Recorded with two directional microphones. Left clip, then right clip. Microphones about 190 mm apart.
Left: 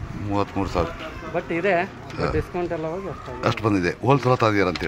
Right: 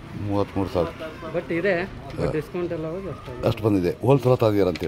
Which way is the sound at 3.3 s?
15° right (ahead or behind).